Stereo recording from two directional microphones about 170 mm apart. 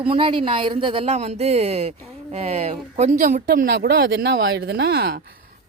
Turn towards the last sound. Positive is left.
turn(degrees=-70)  # may be behind; listen again after turning